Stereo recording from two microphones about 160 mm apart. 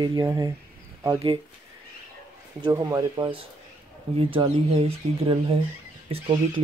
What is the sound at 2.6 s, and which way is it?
Speech, 25° right (ahead or behind).